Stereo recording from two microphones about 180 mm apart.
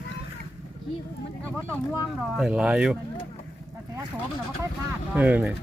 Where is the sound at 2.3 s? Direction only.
5° right (ahead or behind).